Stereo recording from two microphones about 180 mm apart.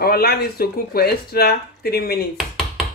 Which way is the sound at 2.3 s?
Centre (ahead or behind).